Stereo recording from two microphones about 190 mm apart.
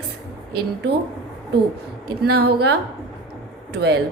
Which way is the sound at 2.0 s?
55° right (ahead or behind).